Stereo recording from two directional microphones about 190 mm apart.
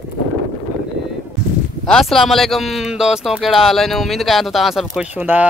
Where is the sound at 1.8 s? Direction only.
Centre (ahead or behind).